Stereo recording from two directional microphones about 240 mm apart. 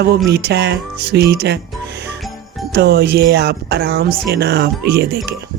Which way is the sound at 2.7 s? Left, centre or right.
Right.